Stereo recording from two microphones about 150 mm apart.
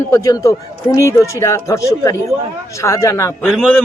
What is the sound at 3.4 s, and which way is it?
Speech, 5° right (ahead or behind).